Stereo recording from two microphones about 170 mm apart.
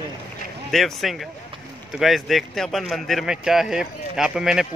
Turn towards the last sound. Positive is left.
turn(degrees=-5)  # may be behind; listen again after turning